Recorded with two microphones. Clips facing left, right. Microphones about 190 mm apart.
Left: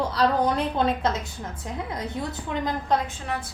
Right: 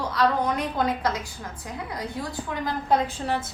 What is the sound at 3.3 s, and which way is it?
Speech, 25° right (ahead or behind).